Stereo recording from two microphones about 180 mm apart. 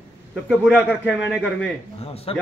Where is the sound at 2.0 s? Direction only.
35° left (ahead or behind).